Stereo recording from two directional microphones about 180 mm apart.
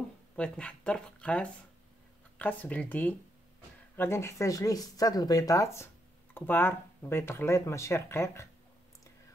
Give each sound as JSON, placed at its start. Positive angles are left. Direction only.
{"t": 0.4, "sound": "speech", "side_deg": 5}